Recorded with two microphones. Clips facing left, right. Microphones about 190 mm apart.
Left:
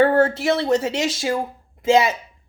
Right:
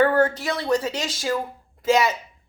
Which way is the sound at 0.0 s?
25° left (ahead or behind).